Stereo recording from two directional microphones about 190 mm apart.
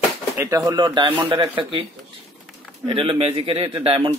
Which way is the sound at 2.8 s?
25° right (ahead or behind).